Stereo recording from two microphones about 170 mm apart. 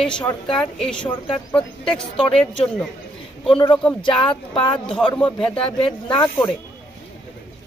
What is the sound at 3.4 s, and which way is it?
Speech, 30° left (ahead or behind).